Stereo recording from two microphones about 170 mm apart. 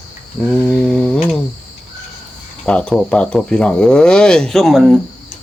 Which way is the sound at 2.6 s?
5° left (ahead or behind).